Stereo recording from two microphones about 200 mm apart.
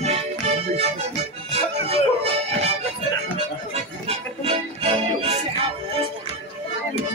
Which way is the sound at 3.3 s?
30° right (ahead or behind).